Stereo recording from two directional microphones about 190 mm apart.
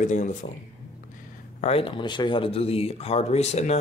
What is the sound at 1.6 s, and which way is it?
Speech, 30° left (ahead or behind).